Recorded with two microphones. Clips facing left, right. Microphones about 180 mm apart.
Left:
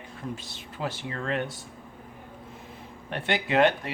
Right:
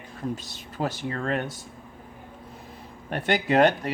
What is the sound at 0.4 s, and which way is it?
Speech, 40° right (ahead or behind).